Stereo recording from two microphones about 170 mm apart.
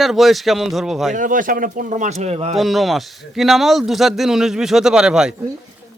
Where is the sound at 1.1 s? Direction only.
50° right (ahead or behind).